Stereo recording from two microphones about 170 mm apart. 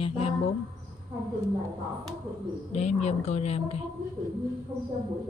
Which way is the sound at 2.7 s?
40° left (ahead or behind).